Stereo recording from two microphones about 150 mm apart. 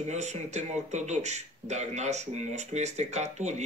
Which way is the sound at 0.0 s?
50° right (ahead or behind).